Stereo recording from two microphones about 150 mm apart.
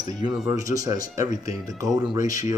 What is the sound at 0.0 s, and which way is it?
Speech, 25° right (ahead or behind).